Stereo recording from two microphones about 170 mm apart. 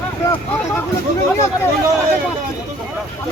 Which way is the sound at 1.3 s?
15° left (ahead or behind).